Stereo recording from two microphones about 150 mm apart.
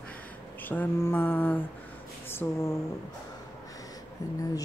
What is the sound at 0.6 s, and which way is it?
Mantra, 10° left (ahead or behind).